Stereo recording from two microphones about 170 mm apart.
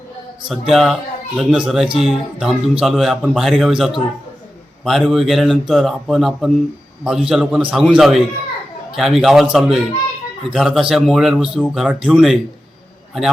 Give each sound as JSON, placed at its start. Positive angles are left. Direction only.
{"t": 0.4, "sound": "speech", "side_deg": 0}